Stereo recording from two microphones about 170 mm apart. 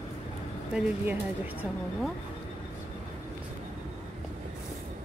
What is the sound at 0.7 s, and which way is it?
Speech, 10° right (ahead or behind).